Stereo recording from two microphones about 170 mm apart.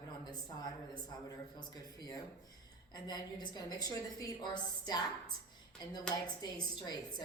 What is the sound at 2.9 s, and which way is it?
A woman's voice, 25° left (ahead or behind).